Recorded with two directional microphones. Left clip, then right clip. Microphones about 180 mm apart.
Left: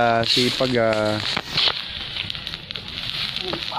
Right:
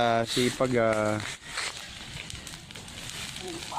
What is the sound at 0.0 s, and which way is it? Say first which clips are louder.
Speech: left 7 dB; 20° right (ahead or behind).